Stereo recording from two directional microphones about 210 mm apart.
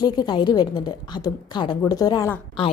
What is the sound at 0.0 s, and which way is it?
A woman's voice, 20° left (ahead or behind).